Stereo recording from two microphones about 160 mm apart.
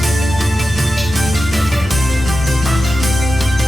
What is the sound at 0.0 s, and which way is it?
Music, centre (ahead or behind).